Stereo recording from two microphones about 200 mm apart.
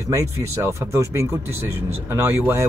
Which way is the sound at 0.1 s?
15° right (ahead or behind).